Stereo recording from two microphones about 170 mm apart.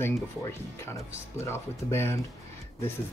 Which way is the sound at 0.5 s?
15° left (ahead or behind).